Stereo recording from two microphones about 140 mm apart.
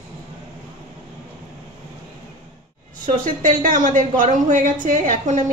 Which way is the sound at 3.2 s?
70° right (ahead or behind).